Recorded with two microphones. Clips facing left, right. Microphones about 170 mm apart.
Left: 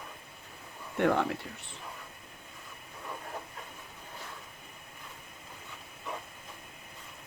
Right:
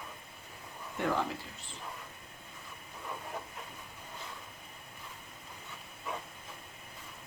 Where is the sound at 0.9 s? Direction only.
60° left (ahead or behind).